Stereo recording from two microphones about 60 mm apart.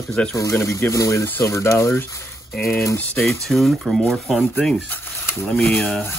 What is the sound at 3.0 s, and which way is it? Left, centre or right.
Speech, left.